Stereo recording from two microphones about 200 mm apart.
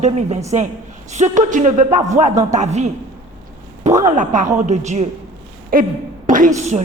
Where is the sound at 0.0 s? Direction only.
35° right (ahead or behind).